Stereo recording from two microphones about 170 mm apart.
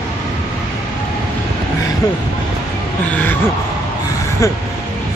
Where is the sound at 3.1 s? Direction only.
10° left (ahead or behind).